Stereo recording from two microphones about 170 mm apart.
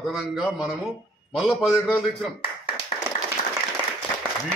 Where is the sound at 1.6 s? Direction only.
15° left (ahead or behind).